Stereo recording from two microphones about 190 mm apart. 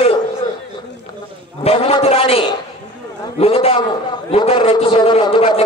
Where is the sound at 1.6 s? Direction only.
35° left (ahead or behind).